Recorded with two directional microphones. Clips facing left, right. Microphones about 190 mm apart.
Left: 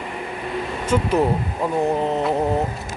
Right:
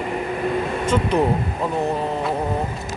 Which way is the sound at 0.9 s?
5° left (ahead or behind).